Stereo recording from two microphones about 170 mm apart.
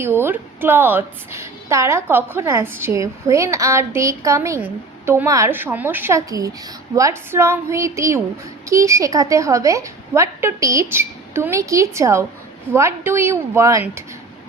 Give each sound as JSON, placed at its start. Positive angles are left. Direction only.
{"t": 0.0, "sound": "a woman's voice", "side_deg": -15}